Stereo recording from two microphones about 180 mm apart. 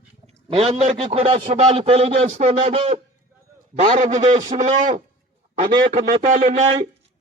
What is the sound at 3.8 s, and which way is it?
Speech, 45° right (ahead or behind).